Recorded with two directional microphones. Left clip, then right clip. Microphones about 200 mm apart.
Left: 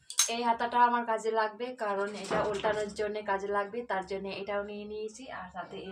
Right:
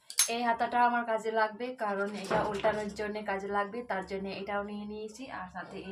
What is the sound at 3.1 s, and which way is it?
Speech, 10° left (ahead or behind).